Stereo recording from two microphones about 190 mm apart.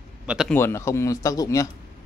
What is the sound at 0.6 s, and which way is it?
Speech, 15° left (ahead or behind).